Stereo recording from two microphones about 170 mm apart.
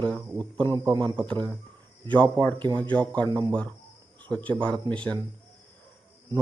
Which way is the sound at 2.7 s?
10° left (ahead or behind).